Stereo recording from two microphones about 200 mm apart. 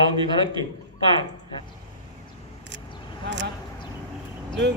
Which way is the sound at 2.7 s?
60° right (ahead or behind).